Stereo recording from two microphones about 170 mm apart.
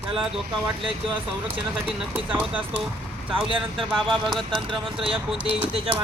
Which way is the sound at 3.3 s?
30° right (ahead or behind).